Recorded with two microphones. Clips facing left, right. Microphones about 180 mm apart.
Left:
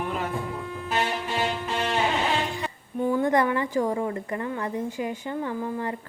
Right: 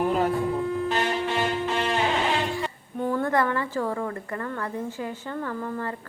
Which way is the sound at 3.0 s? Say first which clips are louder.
Left 2 dB; 10° left (ahead or behind).